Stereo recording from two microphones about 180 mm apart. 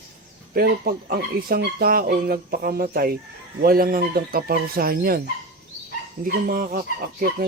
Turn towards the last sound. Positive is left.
turn(degrees=-55)  # may be behind; listen again after turning